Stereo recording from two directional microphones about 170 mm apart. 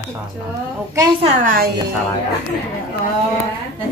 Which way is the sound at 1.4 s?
55° right (ahead or behind).